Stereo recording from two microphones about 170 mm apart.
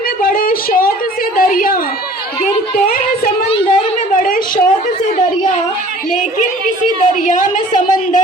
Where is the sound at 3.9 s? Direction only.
55° left (ahead or behind).